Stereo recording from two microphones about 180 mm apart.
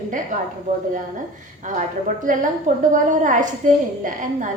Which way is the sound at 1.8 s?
45° right (ahead or behind).